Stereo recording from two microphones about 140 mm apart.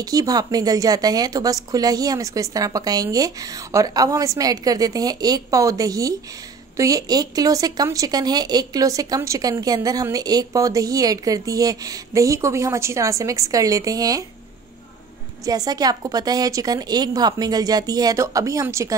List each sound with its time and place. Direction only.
0.0 s a woman's voice: 25° right (ahead or behind)
15.4 s a woman's voice: 30° right (ahead or behind)